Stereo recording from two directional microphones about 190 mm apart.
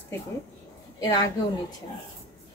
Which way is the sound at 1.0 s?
20° left (ahead or behind).